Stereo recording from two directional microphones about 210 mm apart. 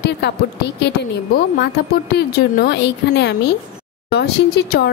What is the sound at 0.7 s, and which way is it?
A woman's voice, 55° left (ahead or behind).